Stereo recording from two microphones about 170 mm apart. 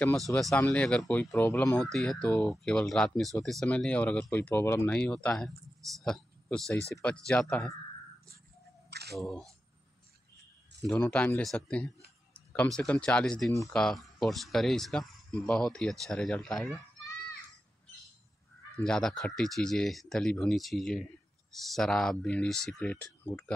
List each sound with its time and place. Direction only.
0.3 s speech: 5° left (ahead or behind)
9.1 s speech: centre (ahead or behind)
10.9 s speech: 5° left (ahead or behind)
13.5 s speech: 20° left (ahead or behind)
13.7 s speech: centre (ahead or behind)
18.8 s speech: 5° left (ahead or behind)